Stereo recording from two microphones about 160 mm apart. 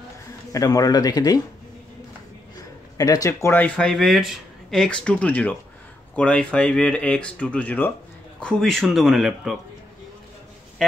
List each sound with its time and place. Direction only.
0.5 s speech: 20° left (ahead or behind)
3.0 s speech: 25° left (ahead or behind); by 9.6 s 5° right (ahead or behind)